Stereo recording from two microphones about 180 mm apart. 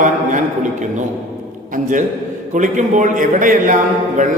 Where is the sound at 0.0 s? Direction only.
45° right (ahead or behind).